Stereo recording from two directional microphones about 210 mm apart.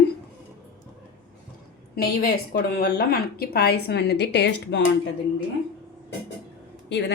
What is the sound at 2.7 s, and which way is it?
A woman's voice, 45° left (ahead or behind).